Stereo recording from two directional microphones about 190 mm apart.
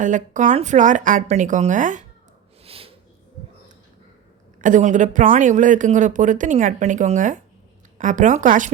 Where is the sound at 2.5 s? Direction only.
30° right (ahead or behind).